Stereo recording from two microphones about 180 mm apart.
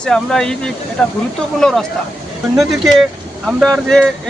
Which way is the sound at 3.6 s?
Centre (ahead or behind).